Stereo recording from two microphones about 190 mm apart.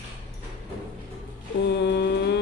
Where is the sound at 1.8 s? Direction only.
60° left (ahead or behind).